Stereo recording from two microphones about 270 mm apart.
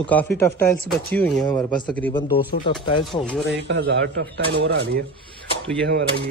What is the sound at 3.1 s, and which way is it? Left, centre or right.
Speech, centre.